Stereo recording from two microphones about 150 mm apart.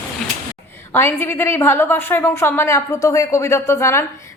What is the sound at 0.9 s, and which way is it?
A woman's voice, 15° left (ahead or behind).